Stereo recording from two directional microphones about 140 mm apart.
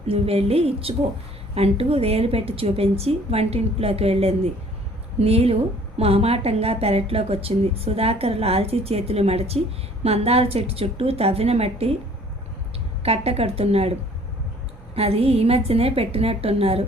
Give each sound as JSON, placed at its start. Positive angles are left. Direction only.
{"t": 0.1, "sound": "speech", "side_deg": -45}
{"t": 13.0, "sound": "speech", "side_deg": -45}
{"t": 14.9, "sound": "speech", "side_deg": -45}